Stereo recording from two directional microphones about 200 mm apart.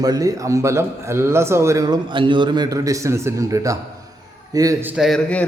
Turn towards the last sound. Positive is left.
turn(degrees=5)  # may be behind; listen again after turning